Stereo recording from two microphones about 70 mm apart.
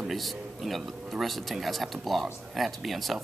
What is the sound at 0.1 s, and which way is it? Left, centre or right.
Speech, centre.